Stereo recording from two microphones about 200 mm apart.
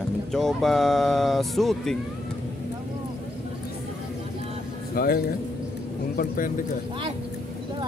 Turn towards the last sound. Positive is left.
turn(degrees=45)  # may be behind; listen again after turning